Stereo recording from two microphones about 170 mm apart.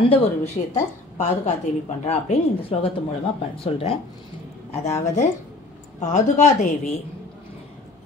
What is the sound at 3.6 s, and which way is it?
A woman's voice, 35° left (ahead or behind).